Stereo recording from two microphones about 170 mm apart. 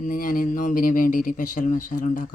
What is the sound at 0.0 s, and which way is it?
Speech, 55° left (ahead or behind).